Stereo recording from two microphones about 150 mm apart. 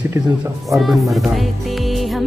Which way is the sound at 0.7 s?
Centre (ahead or behind).